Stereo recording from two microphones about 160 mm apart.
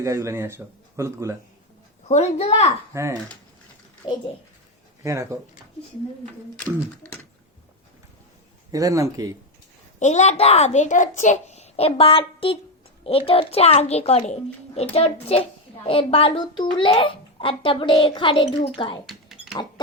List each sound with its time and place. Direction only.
0.0 s speech: 20° right (ahead or behind)
2.0 s a child's voice: 45° left (ahead or behind)
2.9 s speech: 20° right (ahead or behind)
4.0 s speech: 30° left (ahead or behind)
5.0 s speech: 20° right (ahead or behind)
6.7 s speech: 10° left (ahead or behind)
8.7 s speech: 20° right (ahead or behind)
10.0 s a child's voice: 45° left (ahead or behind)
19.0 s cash register: centre (ahead or behind)